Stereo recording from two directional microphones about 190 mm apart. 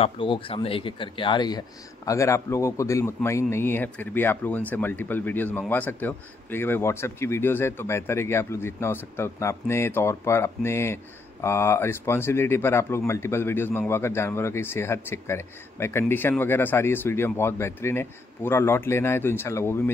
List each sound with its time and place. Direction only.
0.0 s a man's voice: 30° left (ahead or behind); by 19.8 s 15° left (ahead or behind)